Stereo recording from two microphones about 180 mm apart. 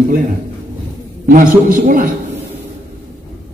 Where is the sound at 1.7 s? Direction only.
45° right (ahead or behind).